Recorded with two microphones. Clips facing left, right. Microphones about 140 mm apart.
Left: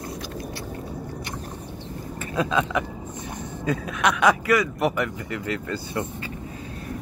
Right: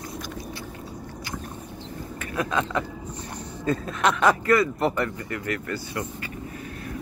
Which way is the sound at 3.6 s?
10° left (ahead or behind).